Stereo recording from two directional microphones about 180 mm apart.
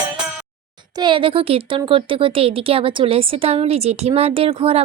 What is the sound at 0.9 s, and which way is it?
A woman's voice, 25° right (ahead or behind).